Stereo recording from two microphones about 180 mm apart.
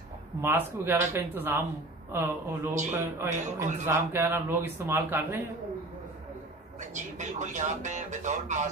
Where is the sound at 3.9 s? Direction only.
15° right (ahead or behind).